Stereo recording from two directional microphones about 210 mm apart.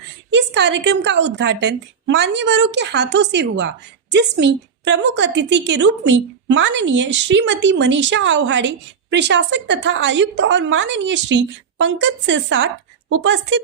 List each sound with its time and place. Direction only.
0.3 s a woman's voice: 55° right (ahead or behind)